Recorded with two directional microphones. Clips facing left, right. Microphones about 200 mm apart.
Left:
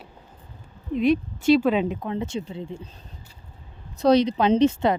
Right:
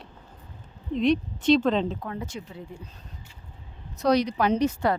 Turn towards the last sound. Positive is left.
turn(degrees=25)  # may be behind; listen again after turning